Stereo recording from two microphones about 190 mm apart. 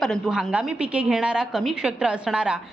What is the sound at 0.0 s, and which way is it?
A woman's voice, centre (ahead or behind).